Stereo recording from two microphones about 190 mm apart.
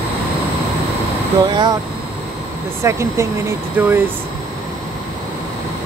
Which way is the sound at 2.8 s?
15° right (ahead or behind).